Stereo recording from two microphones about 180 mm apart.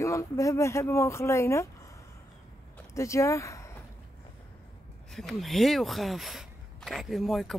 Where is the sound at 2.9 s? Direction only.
15° left (ahead or behind).